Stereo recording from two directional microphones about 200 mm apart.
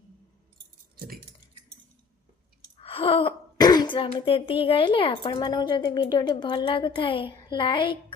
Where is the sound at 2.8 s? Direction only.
25° left (ahead or behind).